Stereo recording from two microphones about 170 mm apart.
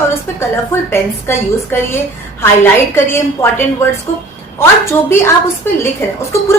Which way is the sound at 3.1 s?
15° left (ahead or behind).